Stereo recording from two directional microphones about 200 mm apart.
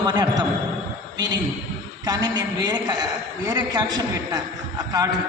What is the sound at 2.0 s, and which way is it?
A man's voice, 20° right (ahead or behind).